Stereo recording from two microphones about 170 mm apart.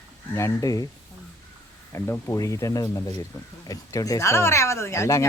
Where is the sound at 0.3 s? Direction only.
20° left (ahead or behind).